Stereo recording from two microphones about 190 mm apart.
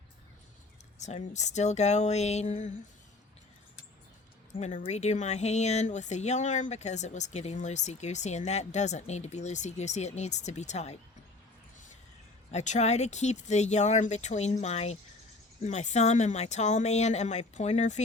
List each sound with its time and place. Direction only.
0.9 s speech: 40° left (ahead or behind)
4.5 s speech: 35° left (ahead or behind)
12.5 s speech: 35° left (ahead or behind)